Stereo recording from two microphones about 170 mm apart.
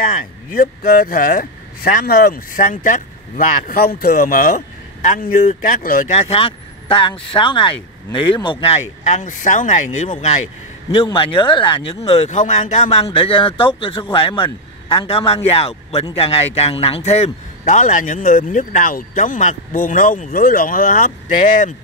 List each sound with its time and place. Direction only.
0.2 s speech: 55° left (ahead or behind)
6.1 s speech: 35° left (ahead or behind)